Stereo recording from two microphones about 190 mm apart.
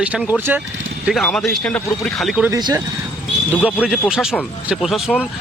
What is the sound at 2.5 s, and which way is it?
Speech, 20° right (ahead or behind).